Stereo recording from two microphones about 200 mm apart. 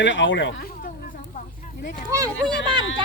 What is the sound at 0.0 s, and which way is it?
Speech, 65° left (ahead or behind).